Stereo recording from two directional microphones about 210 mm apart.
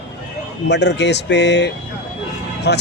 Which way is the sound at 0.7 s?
55° left (ahead or behind).